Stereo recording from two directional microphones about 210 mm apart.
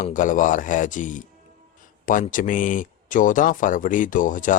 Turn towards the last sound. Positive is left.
turn(degrees=40)  # may be behind; listen again after turning